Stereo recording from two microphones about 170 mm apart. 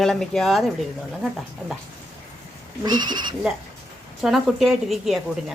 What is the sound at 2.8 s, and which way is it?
Speech, 25° right (ahead or behind).